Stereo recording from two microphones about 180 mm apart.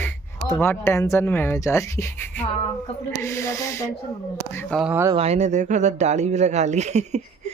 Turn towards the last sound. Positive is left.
turn(degrees=-40)  # may be behind; listen again after turning